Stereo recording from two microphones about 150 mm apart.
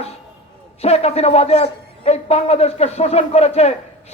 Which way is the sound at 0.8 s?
45° left (ahead or behind).